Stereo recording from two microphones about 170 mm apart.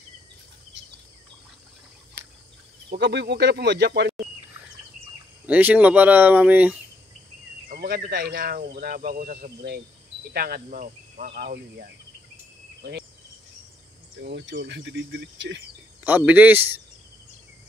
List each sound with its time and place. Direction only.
2.9 s speech: 80° right
5.5 s speech: 10° right (ahead or behind)
7.6 s speech: 60° right (ahead or behind)
14.2 s speech: 90° right
16.0 s speech: 10° right (ahead or behind)